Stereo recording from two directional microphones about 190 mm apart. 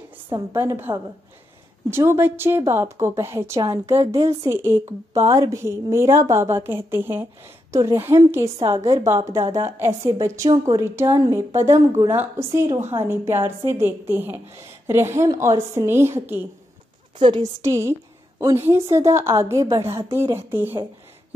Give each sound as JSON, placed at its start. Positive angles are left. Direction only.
{"t": 0.3, "sound": "a woman's voice", "side_deg": -15}